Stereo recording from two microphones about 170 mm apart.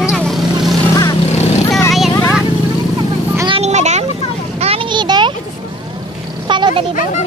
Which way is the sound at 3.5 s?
40° right (ahead or behind).